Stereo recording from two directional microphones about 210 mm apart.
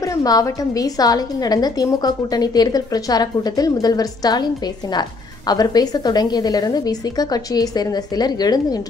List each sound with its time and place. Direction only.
0.0 s a woman's voice: 15° left (ahead or behind)
5.5 s a woman's voice: 20° left (ahead or behind)